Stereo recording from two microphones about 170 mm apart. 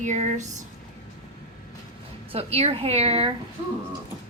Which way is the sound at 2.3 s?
35° right (ahead or behind).